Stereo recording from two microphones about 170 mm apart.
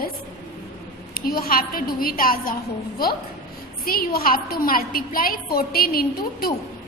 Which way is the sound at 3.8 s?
60° left (ahead or behind).